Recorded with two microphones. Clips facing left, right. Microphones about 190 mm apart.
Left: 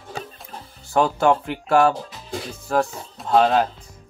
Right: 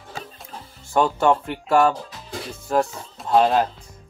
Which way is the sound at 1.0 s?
5° left (ahead or behind).